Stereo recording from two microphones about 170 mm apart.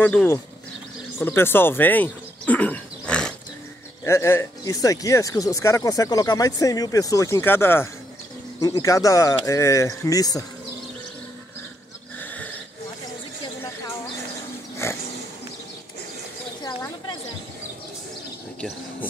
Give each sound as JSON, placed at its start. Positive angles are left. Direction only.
{"t": 0.0, "sound": "speech", "side_deg": 10}
{"t": 4.0, "sound": "speech", "side_deg": 15}
{"t": 14.8, "sound": "a sound", "side_deg": 15}